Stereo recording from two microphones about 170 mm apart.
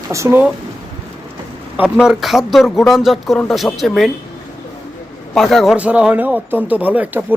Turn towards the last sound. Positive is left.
turn(degrees=-10)  # may be behind; listen again after turning